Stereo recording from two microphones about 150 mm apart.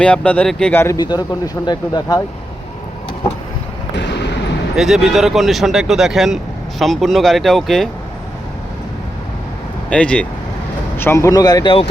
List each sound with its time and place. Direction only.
0.0 s speech: 10° left (ahead or behind)
0.9 s speech: 25° left (ahead or behind)
4.8 s speech: centre (ahead or behind)
9.9 s speech: 10° left (ahead or behind); by 11.9 s 35° left (ahead or behind)